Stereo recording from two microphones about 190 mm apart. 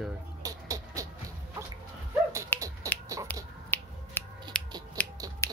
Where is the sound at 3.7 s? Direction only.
10° left (ahead or behind).